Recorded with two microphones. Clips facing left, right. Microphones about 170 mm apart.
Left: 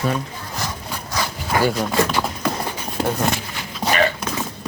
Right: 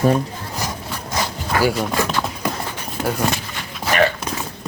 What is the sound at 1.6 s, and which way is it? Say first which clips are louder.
Speech: right 2 dB; 5° right (ahead or behind).